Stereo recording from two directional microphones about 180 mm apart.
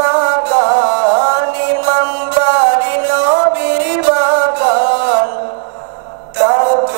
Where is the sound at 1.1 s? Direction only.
25° right (ahead or behind).